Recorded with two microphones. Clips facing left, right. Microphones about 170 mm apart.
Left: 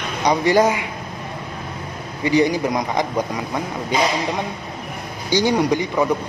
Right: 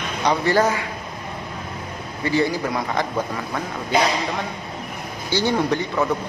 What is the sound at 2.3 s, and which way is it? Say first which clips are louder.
Speech: left 4 dB; 15° left (ahead or behind).